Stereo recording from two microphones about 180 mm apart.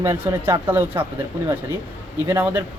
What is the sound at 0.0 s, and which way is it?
Speech, 15° right (ahead or behind).